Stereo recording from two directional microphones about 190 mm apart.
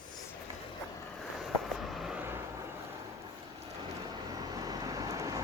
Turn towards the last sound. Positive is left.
turn(degrees=-20)  # may be behind; listen again after turning